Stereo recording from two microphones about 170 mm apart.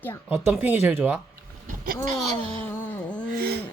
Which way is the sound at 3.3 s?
65° right (ahead or behind).